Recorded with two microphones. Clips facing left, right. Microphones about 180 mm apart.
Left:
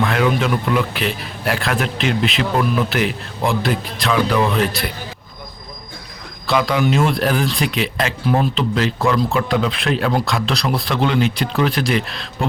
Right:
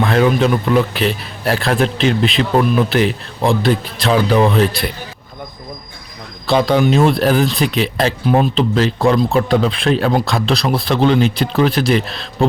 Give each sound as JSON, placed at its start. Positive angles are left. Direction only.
{"t": 0.0, "sound": "speech", "side_deg": -30}
{"t": 6.5, "sound": "speech", "side_deg": -30}